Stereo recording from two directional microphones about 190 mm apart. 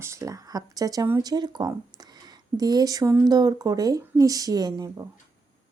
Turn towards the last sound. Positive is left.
turn(degrees=-20)  # may be behind; listen again after turning